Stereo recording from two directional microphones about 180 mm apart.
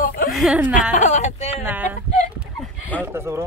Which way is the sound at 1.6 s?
10° right (ahead or behind).